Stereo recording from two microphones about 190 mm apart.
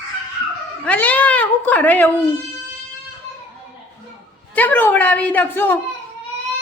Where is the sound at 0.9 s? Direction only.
5° left (ahead or behind).